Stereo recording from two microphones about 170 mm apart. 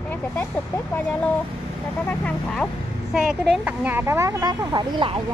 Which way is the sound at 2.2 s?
5° left (ahead or behind).